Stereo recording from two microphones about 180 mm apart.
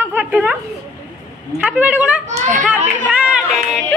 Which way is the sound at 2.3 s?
45° right (ahead or behind).